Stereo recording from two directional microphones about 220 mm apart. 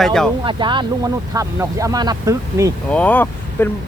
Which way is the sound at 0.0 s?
Centre (ahead or behind).